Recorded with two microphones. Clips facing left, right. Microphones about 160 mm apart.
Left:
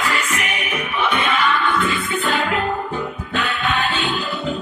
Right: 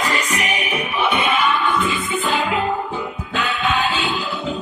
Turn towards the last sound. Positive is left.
turn(degrees=-5)  # may be behind; listen again after turning